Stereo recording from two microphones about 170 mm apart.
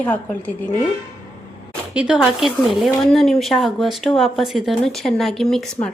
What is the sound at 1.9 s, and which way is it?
A woman's voice, 5° right (ahead or behind).